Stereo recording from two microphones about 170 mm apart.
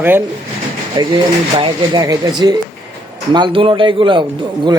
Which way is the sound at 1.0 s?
25° right (ahead or behind).